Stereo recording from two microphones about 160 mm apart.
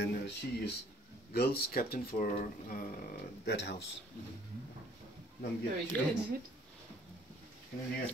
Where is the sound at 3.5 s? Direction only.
90° left.